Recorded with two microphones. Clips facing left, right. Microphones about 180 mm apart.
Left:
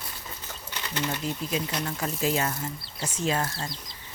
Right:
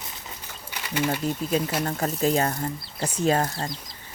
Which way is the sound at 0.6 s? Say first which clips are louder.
Right 5 dB; 10° right (ahead or behind).